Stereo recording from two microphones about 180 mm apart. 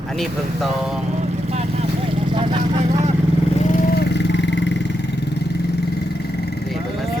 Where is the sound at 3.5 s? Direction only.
45° left (ahead or behind); by 5.7 s 70° left (ahead or behind).